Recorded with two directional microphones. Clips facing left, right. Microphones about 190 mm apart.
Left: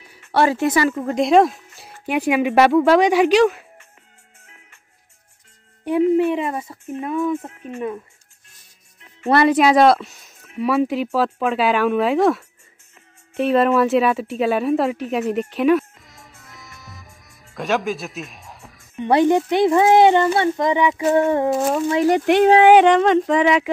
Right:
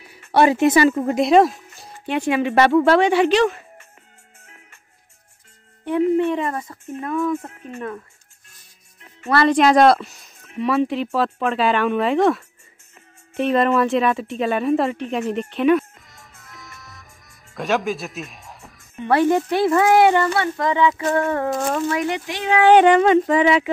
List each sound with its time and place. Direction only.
0.3 s speech: 15° right (ahead or behind)
1.0 s speech: 5° right (ahead or behind)
4.5 s music: 45° right (ahead or behind)
5.9 s speech: 10° left (ahead or behind)
9.5 s a woman's voice: 5° left (ahead or behind)
18.9 s speech: 20° left (ahead or behind)
21.5 s speech: 5° left (ahead or behind)
22.1 s speech: 55° left (ahead or behind)
22.8 s speech: 5° right (ahead or behind)